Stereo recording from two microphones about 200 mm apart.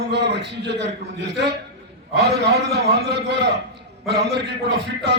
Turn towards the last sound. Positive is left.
turn(degrees=-55)  # may be behind; listen again after turning